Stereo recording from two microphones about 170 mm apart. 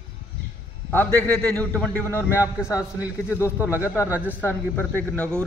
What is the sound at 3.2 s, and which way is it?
Speech, 15° left (ahead or behind).